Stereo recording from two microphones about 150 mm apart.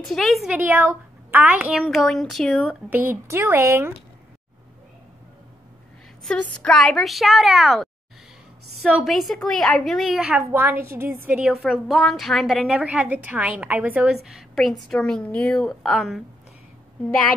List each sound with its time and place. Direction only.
0.0 s a woman's voice: centre (ahead or behind)
0.6 s a woman's voice: 15° right (ahead or behind)
2.9 s a woman's voice: 10° right (ahead or behind)
6.2 s a woman's voice: 5° left (ahead or behind)